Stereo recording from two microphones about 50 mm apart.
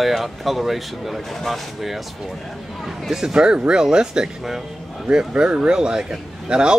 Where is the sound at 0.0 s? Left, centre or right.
Centre.